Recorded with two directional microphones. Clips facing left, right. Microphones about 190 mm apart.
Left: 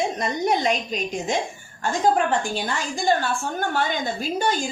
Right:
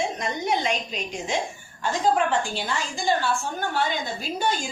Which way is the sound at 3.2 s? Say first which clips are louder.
Left 1 dB; 50° left (ahead or behind).